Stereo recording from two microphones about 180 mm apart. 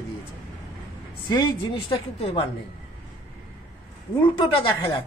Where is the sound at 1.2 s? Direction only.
25° left (ahead or behind).